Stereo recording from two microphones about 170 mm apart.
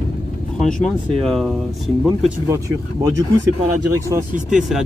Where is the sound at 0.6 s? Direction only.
5° left (ahead or behind).